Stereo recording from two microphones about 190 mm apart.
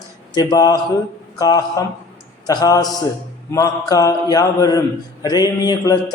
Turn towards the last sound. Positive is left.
turn(degrees=20)  # may be behind; listen again after turning